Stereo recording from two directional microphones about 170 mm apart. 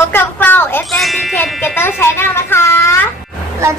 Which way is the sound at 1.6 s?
15° left (ahead or behind).